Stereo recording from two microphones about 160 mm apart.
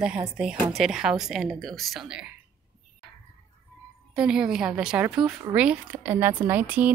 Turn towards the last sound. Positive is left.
turn(degrees=-10)  # may be behind; listen again after turning